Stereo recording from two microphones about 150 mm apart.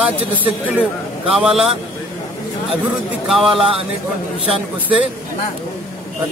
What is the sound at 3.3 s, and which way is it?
Speech, 5° right (ahead or behind).